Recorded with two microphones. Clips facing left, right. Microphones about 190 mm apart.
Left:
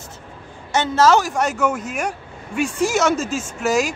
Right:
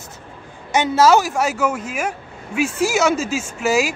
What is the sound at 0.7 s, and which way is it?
Speech, 10° right (ahead or behind).